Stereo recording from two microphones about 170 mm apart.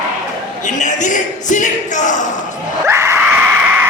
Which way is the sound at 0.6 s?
45° left (ahead or behind).